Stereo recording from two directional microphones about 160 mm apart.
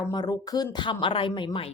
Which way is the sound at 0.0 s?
25° left (ahead or behind).